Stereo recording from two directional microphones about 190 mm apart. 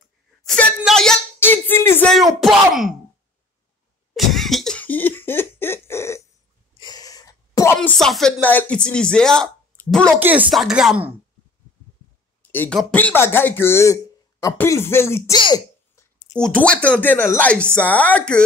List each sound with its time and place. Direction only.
0.4 s a sound: centre (ahead or behind)
4.1 s cough: centre (ahead or behind)
6.7 s a sound: 20° left (ahead or behind)
8.0 s a woman's voice: 5° left (ahead or behind)
10.1 s speech: 10° right (ahead or behind)
12.4 s speech: 10° left (ahead or behind)
16.3 s speech: 5° left (ahead or behind)